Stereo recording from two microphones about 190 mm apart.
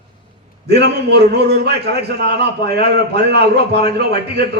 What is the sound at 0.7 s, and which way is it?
A man's voice, 60° right (ahead or behind).